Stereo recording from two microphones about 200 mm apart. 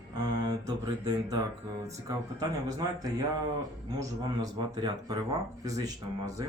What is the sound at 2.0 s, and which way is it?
Speech, 15° right (ahead or behind).